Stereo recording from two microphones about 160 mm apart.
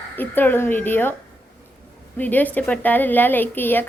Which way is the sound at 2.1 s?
10° left (ahead or behind).